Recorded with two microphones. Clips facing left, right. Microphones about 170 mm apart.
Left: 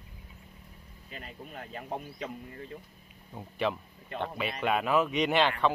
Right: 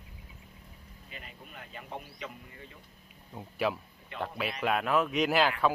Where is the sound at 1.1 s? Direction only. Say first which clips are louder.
Left 5 dB; 40° left (ahead or behind).